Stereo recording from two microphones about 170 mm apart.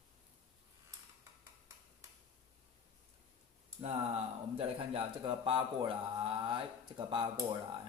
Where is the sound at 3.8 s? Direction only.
35° right (ahead or behind).